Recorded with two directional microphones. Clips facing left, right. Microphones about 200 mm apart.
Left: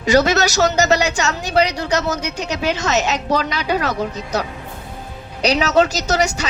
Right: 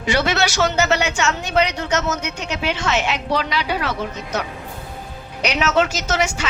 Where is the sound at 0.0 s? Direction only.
40° left (ahead or behind).